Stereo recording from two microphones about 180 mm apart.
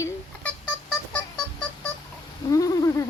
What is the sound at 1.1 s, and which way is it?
Music, 5° left (ahead or behind).